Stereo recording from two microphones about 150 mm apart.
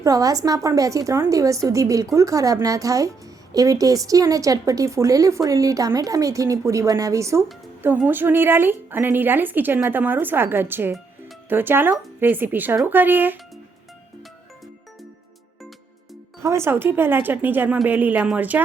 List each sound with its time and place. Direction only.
0.0 s a woman's voice: 25° right (ahead or behind)
16.4 s a woman's voice: 20° right (ahead or behind)